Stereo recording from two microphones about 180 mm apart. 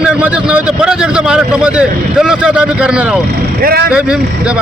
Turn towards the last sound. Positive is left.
turn(degrees=-55)  # may be behind; listen again after turning